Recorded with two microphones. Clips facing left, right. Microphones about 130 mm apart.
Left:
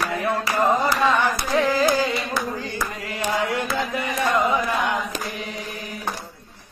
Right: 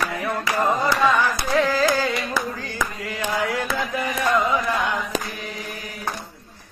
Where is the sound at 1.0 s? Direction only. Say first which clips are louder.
Even; 20° left (ahead or behind).